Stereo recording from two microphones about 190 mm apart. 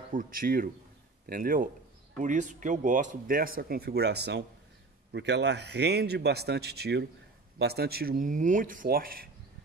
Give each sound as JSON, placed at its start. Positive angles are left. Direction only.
{"t": 0.1, "sound": "a man's voice", "side_deg": -45}